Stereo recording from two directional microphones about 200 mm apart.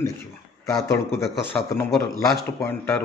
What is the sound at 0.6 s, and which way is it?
Speech, 15° left (ahead or behind).